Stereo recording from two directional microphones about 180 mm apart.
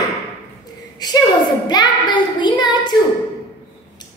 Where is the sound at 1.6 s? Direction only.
25° left (ahead or behind).